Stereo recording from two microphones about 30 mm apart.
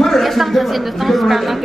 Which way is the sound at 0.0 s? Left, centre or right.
Centre.